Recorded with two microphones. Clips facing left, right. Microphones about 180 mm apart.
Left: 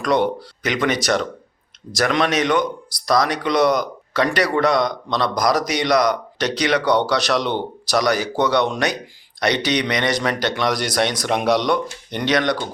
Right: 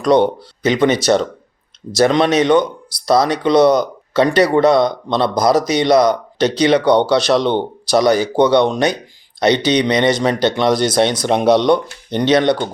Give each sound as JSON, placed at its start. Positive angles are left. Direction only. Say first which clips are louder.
{"t": 0.0, "sound": "speech", "louder": "right 6 dB", "side_deg": -25}
{"t": 2.0, "sound": "speech", "louder": "right 6 dB", "side_deg": -30}